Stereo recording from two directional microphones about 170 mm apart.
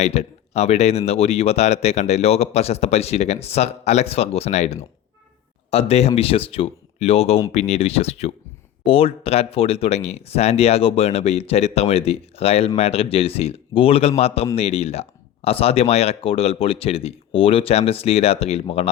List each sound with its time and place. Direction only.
0.0 s speech: 40° left (ahead or behind)